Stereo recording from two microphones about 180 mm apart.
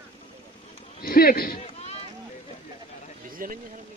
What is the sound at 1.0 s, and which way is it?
Speech, 55° left (ahead or behind).